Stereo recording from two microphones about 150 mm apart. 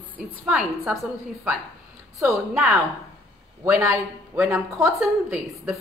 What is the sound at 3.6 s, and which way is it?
A woman's voice, 20° right (ahead or behind).